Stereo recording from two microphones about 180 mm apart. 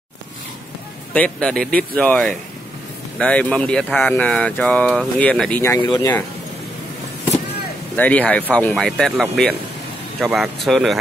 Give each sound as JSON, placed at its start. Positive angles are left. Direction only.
{"t": 1.1, "sound": "speech", "side_deg": 5}
{"t": 5.8, "sound": "speech", "side_deg": 25}
{"t": 7.9, "sound": "speech", "side_deg": 10}